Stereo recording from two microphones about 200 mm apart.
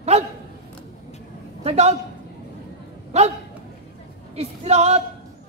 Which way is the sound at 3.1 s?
35° right (ahead or behind).